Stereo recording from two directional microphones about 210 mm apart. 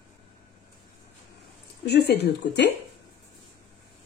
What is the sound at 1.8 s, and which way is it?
Speech, 50° left (ahead or behind).